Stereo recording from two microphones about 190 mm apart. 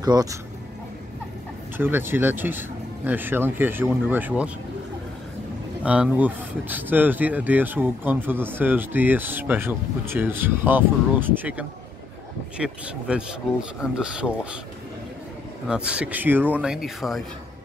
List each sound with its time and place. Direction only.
0.0 s speech: 20° right (ahead or behind)
1.8 s speech: 10° right (ahead or behind)
5.9 s speech: 5° right (ahead or behind)
15.7 s speech: 5° right (ahead or behind)